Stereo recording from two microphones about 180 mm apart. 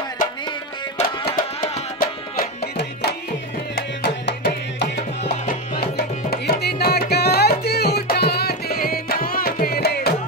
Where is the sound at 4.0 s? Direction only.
70° left (ahead or behind).